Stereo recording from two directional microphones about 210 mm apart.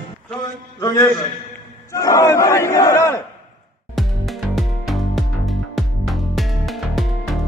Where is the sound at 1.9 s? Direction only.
15° left (ahead or behind).